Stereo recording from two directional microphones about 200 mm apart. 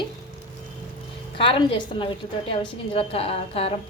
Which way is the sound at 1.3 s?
25° left (ahead or behind).